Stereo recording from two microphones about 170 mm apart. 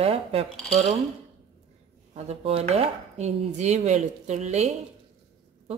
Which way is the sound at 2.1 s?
35° right (ahead or behind).